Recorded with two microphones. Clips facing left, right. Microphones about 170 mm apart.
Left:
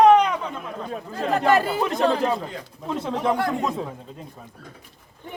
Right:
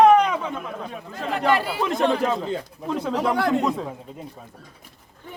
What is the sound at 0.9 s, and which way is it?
Chatter, 40° left (ahead or behind).